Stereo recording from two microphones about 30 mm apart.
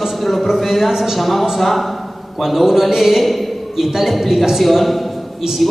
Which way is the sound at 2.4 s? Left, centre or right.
Centre.